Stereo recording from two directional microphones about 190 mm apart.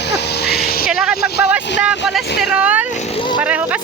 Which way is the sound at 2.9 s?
35° left (ahead or behind).